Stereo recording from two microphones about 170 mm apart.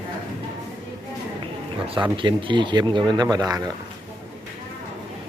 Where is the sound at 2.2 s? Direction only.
30° right (ahead or behind).